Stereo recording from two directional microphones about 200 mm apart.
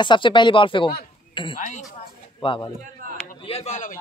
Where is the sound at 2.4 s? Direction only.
25° left (ahead or behind).